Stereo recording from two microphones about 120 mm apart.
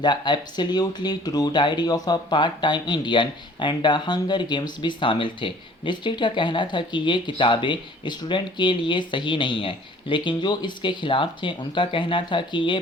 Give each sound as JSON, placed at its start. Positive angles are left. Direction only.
{"t": 0.0, "sound": "speech", "side_deg": 40}